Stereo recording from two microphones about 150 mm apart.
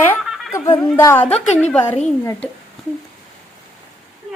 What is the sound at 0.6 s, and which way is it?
Speech, 35° left (ahead or behind).